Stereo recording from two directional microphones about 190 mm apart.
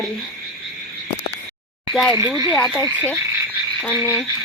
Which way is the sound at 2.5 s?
10° left (ahead or behind).